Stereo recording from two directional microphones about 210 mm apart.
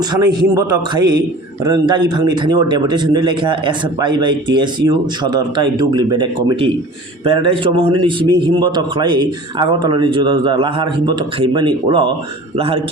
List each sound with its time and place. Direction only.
0.0 s a man's voice: 20° right (ahead or behind)